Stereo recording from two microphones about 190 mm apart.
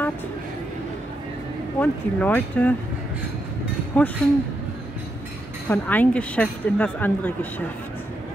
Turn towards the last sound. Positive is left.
turn(degrees=10)  # may be behind; listen again after turning